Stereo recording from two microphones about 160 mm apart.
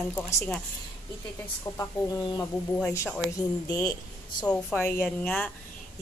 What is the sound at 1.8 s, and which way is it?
A woman's voice, 20° left (ahead or behind).